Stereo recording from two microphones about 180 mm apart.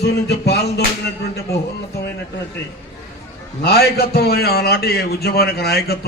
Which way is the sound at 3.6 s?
60° left (ahead or behind).